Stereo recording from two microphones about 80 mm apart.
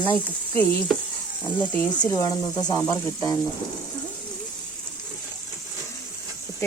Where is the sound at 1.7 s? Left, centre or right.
Left.